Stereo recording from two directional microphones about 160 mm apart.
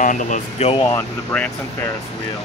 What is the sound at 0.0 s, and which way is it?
Speech, 55° left (ahead or behind).